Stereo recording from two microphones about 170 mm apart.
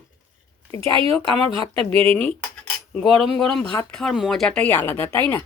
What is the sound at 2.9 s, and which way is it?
A woman's voice, 5° left (ahead or behind).